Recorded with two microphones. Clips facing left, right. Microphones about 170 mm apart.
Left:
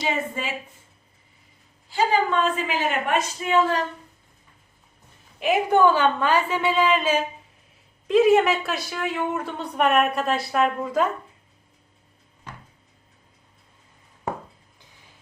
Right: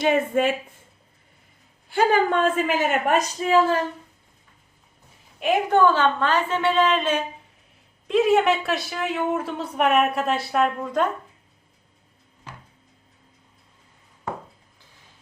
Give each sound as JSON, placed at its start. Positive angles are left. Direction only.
{"t": 0.0, "sound": "a woman's voice", "side_deg": -55}
{"t": 1.9, "sound": "a woman's voice", "side_deg": -60}
{"t": 5.7, "sound": "a woman's voice", "side_deg": 15}